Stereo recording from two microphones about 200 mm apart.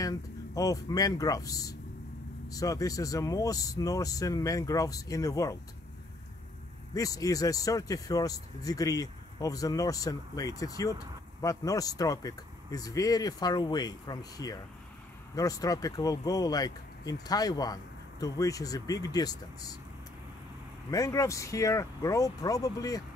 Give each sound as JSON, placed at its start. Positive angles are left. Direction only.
{"t": 0.0, "sound": "speech", "side_deg": 15}
{"t": 6.9, "sound": "speech", "side_deg": 15}
{"t": 20.9, "sound": "speech", "side_deg": 15}